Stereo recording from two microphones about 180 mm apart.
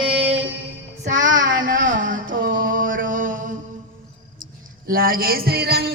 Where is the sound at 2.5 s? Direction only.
50° right (ahead or behind).